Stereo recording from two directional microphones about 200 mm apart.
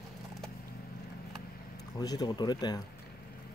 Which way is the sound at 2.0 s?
20° left (ahead or behind).